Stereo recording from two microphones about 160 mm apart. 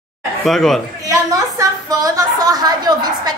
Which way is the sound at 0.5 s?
Centre (ahead or behind).